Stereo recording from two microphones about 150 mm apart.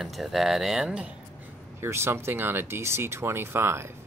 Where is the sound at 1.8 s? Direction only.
15° right (ahead or behind).